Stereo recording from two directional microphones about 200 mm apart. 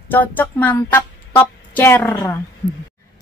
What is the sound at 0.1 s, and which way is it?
Speech, 10° left (ahead or behind).